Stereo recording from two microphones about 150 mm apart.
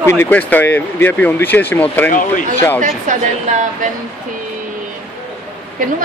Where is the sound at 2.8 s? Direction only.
55° right (ahead or behind).